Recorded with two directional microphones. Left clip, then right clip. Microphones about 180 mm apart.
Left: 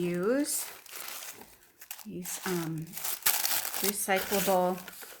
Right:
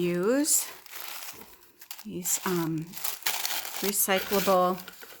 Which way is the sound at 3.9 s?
45° right (ahead or behind).